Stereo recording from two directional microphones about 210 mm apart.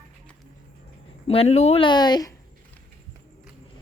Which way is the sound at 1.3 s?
30° left (ahead or behind).